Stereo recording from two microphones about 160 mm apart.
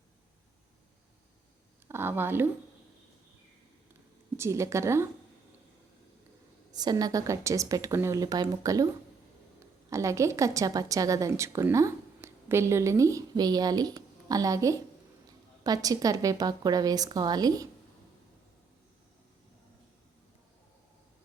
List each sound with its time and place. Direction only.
1.9 s a sound: 15° right (ahead or behind)
4.4 s a woman's voice: 15° right (ahead or behind)
6.7 s a woman's voice: 25° right (ahead or behind)
9.9 s a woman's voice: 20° right (ahead or behind)